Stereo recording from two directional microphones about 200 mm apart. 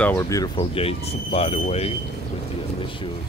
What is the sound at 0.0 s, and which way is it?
Speech, 10° left (ahead or behind).